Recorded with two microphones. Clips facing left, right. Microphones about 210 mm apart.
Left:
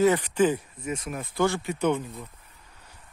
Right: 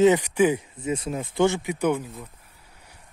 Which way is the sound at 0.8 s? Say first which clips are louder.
Right 5 dB; 30° right (ahead or behind).